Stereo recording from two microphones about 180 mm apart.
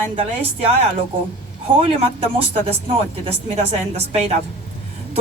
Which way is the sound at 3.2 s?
35° right (ahead or behind).